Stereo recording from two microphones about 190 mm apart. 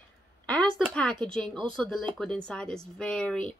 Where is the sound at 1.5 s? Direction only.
5° left (ahead or behind).